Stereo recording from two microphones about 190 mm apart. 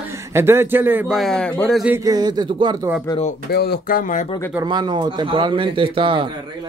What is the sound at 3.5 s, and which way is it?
Speech, 55° left (ahead or behind).